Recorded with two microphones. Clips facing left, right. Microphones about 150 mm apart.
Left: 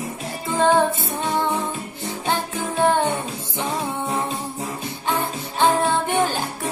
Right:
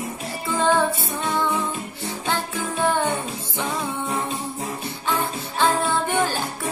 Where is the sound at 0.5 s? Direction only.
20° left (ahead or behind).